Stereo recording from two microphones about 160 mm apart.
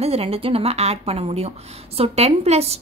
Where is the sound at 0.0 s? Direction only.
40° right (ahead or behind).